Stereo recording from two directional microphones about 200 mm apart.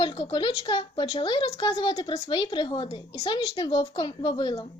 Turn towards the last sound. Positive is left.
turn(degrees=20)  # may be behind; listen again after turning